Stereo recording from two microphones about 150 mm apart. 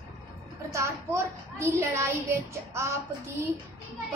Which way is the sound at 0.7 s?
20° right (ahead or behind).